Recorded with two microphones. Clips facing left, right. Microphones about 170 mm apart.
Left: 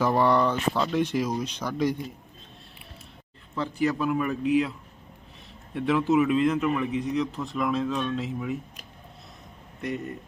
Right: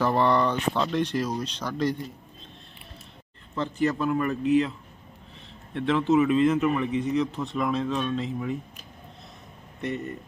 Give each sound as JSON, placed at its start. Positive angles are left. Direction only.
{"t": 0.0, "sound": "speech", "side_deg": 10}
{"t": 3.5, "sound": "a man's voice", "side_deg": 10}
{"t": 5.7, "sound": "a man's voice", "side_deg": 5}